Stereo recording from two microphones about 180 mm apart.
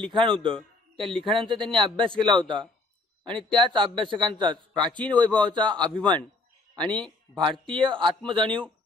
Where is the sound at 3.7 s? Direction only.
25° right (ahead or behind).